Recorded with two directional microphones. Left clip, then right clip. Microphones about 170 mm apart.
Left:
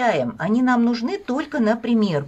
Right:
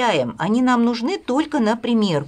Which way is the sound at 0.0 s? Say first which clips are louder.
Right 1 dB; 25° right (ahead or behind).